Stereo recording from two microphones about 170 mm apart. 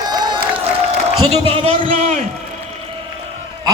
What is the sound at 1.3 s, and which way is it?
Speech, 35° right (ahead or behind).